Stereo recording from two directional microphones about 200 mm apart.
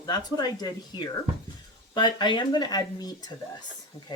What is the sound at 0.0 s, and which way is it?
Speech, 20° left (ahead or behind).